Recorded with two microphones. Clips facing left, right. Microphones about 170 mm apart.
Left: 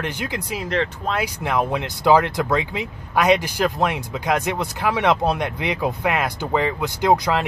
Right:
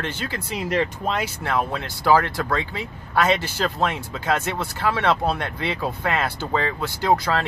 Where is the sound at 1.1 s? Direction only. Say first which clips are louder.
Left 1 dB; 10° left (ahead or behind).